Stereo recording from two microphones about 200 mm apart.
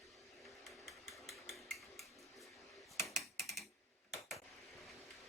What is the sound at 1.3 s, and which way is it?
Hammer, centre (ahead or behind).